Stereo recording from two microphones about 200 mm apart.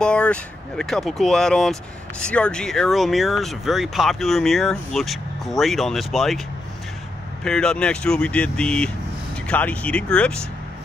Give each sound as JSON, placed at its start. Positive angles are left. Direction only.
{"t": 0.0, "sound": "speech", "side_deg": 5}
{"t": 7.4, "sound": "speech", "side_deg": 5}